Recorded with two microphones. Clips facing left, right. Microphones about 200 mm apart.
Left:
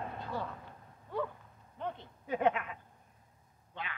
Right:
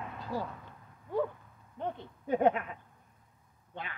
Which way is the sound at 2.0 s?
45° right (ahead or behind).